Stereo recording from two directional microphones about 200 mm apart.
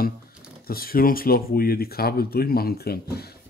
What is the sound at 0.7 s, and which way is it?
Speech, 50° left (ahead or behind).